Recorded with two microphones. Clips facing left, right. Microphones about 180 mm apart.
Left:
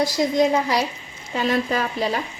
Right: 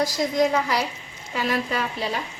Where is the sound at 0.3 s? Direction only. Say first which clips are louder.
Left 2 dB; 30° left (ahead or behind).